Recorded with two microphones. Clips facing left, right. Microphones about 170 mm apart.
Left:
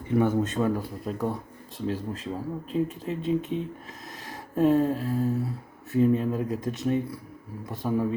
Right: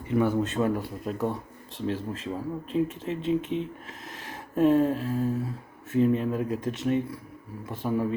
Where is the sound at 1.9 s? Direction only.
35° left (ahead or behind).